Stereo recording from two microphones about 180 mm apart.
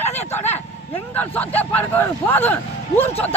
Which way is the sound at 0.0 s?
40° left (ahead or behind).